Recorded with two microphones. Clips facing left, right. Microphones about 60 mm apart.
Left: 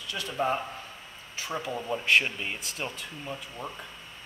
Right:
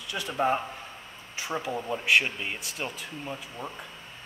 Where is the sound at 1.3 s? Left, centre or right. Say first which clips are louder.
Right 2 dB; centre.